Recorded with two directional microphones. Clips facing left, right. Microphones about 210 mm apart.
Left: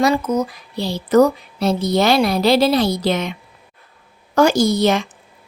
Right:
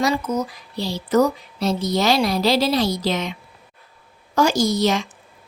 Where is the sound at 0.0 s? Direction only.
55° left (ahead or behind).